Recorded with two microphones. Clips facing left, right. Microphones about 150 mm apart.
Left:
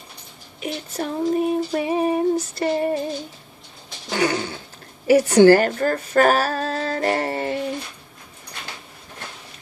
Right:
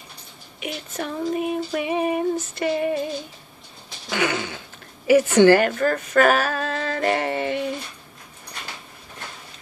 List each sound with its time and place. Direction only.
0.6 s female singing: 35° left (ahead or behind)
4.1 s a sound: 40° left (ahead or behind)
5.0 s a woman's voice: 40° left (ahead or behind)